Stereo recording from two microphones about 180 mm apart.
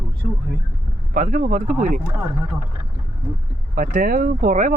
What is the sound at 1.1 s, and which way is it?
Speech, 45° right (ahead or behind).